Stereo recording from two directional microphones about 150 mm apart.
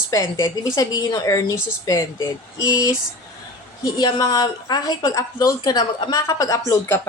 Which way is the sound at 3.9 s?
25° left (ahead or behind).